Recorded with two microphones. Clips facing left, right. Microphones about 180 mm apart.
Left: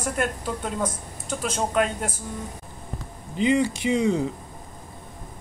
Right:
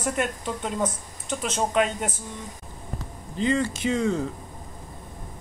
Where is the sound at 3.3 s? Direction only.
15° left (ahead or behind).